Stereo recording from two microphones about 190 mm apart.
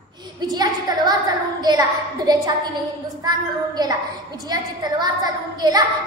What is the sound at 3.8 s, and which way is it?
A woman's voice, 20° right (ahead or behind).